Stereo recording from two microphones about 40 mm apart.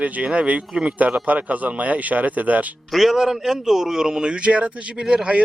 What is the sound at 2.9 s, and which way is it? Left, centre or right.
A man's voice, centre.